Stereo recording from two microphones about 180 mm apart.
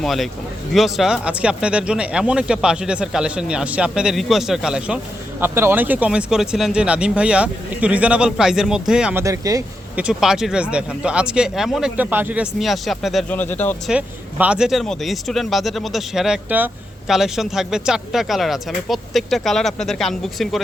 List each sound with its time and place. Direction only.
0.0 s speech: centre (ahead or behind)
9.2 s speech: 20° right (ahead or behind)
9.9 s speech: 5° right (ahead or behind)
13.9 s speech: 5° right (ahead or behind)